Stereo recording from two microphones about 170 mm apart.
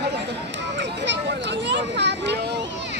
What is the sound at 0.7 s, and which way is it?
A child's voice, 90° right.